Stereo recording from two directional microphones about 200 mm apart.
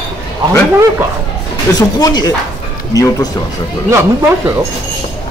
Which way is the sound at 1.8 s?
20° left (ahead or behind).